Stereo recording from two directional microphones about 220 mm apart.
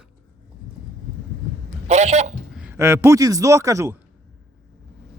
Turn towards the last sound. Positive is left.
turn(degrees=-15)  # may be behind; listen again after turning